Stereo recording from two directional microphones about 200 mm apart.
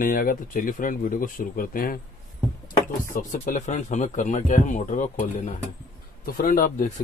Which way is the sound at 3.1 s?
40° left (ahead or behind).